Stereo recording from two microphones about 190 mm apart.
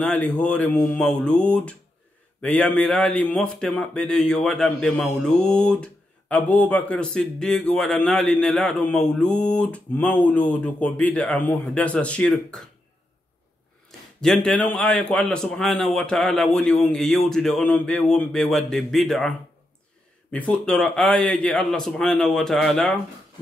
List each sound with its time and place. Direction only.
0.0 s speech: 5° left (ahead or behind)
13.8 s speech: 5° left (ahead or behind)